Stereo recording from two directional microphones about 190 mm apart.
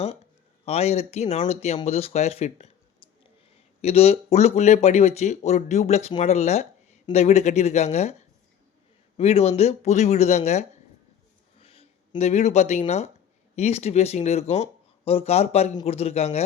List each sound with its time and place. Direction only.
0.6 s speech: 35° left (ahead or behind)
3.8 s speech: 35° left (ahead or behind)
9.1 s speech: 30° left (ahead or behind)